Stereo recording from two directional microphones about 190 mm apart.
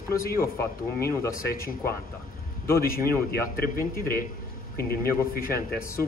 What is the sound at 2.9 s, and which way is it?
A man's voice, 50° left (ahead or behind).